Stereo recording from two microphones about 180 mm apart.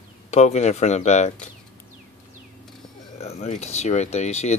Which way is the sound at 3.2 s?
35° left (ahead or behind).